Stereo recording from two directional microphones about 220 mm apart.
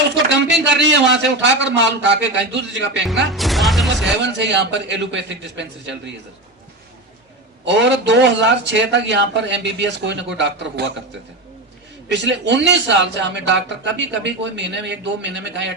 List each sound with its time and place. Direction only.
0.1 s a man's voice: 50° right (ahead or behind)
3.3 s music: centre (ahead or behind)
4.2 s a man's voice: 55° right (ahead or behind)
7.6 s a man's voice: 55° right (ahead or behind)
12.0 s a man's voice: 55° right (ahead or behind)